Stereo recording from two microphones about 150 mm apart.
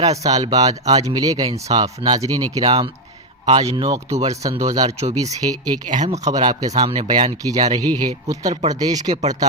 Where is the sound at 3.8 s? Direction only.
25° right (ahead or behind).